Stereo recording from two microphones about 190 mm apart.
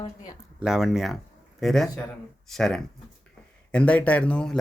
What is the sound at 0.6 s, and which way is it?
Speech, centre (ahead or behind).